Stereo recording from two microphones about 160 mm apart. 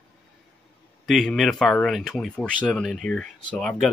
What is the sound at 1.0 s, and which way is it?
Speech, centre (ahead or behind).